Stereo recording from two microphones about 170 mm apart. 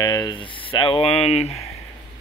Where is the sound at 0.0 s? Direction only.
20° left (ahead or behind); by 1.5 s 40° left (ahead or behind).